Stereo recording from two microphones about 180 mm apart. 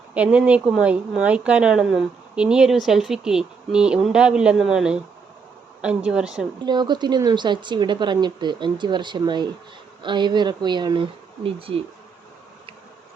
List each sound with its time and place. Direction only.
0.1 s speech: 5° right (ahead or behind)
6.7 s speech: 25° right (ahead or behind)